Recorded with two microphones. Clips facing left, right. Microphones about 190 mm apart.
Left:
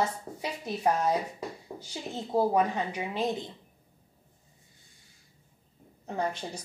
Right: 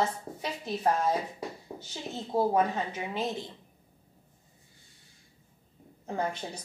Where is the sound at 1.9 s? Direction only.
15° left (ahead or behind).